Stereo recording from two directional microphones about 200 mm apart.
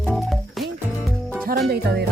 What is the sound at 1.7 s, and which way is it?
Music, 55° right (ahead or behind).